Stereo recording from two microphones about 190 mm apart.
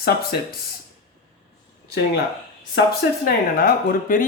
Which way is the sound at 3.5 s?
50° left (ahead or behind).